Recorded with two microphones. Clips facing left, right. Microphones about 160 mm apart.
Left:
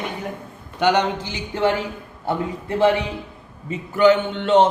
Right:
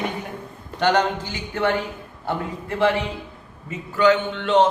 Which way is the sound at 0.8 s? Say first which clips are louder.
Left 1 dB; 15° left (ahead or behind).